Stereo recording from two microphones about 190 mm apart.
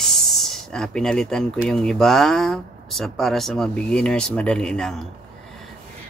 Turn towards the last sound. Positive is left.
turn(degrees=5)  # may be behind; listen again after turning